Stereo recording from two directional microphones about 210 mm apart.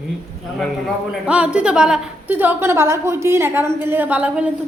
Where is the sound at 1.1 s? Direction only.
5° right (ahead or behind).